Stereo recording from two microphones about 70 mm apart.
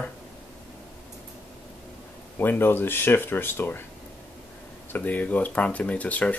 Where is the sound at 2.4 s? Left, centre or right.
Left.